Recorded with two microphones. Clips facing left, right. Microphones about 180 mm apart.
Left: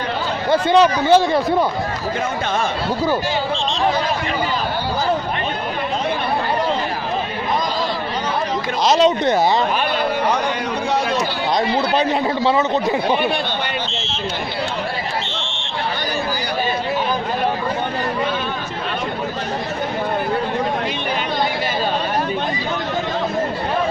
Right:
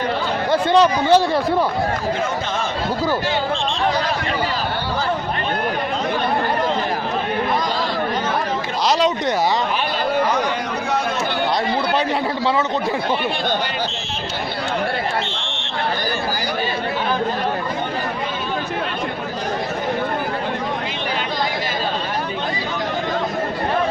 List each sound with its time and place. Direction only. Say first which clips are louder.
0.5 s a man's voice: left 1 dB; 5° left (ahead or behind)
8.9 s speech: left 4 dB; 25° left (ahead or behind)